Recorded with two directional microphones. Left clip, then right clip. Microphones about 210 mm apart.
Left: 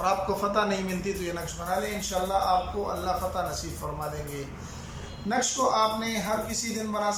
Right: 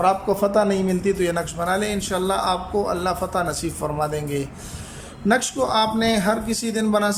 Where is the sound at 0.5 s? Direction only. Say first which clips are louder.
Right 7 dB; 35° right (ahead or behind).